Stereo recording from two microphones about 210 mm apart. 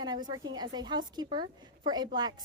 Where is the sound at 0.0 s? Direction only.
20° right (ahead or behind).